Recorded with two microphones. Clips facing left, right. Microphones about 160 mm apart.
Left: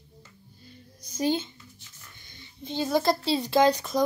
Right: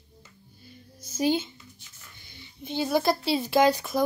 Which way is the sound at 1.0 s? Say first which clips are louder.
Right 1 dB; 5° right (ahead or behind).